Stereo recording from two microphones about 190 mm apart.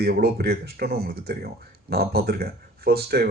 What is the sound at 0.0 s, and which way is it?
Speech, 55° right (ahead or behind).